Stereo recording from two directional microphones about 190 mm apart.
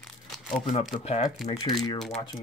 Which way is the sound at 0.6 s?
35° left (ahead or behind).